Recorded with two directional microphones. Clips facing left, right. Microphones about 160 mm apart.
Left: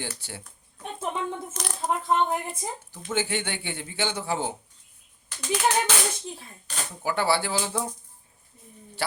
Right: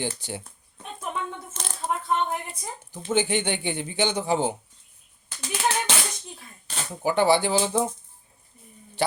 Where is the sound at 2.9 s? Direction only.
20° right (ahead or behind).